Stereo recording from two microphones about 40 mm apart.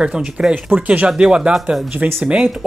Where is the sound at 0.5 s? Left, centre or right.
Right.